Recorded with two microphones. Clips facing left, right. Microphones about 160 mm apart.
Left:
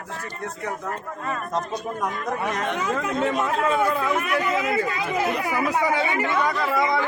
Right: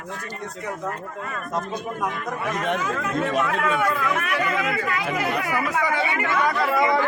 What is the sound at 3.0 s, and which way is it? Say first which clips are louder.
Speech: even; 25° left (ahead or behind).